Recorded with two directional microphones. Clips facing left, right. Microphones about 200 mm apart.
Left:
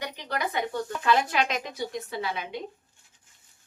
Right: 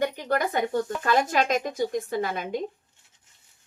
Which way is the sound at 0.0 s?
50° right (ahead or behind).